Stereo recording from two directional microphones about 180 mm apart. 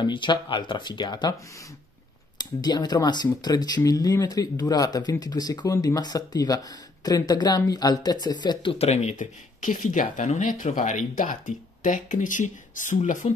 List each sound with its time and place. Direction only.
0.0 s speech: 25° left (ahead or behind)
2.3 s speech: 25° left (ahead or behind); by 13.3 s 45° left (ahead or behind)